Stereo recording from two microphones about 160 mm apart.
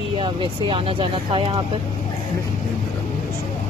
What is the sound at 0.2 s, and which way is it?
Speech, 35° right (ahead or behind).